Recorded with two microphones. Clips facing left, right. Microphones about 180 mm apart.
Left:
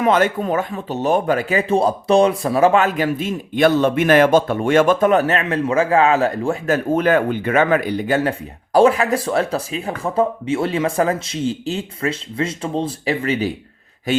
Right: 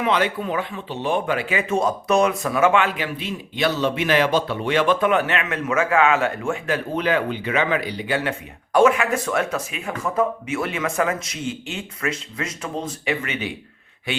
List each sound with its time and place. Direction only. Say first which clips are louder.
0.0 s speech: left 5 dB; 45° left (ahead or behind)